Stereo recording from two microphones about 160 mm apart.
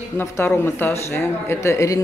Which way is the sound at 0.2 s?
15° left (ahead or behind).